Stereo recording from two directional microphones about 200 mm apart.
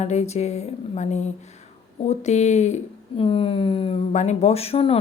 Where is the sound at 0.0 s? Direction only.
35° left (ahead or behind).